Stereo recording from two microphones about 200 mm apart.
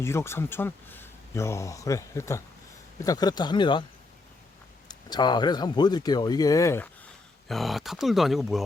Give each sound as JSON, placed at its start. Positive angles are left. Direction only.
{"t": 0.0, "sound": "speech", "side_deg": 15}
{"t": 4.9, "sound": "speech", "side_deg": 20}
{"t": 7.4, "sound": "speech", "side_deg": 0}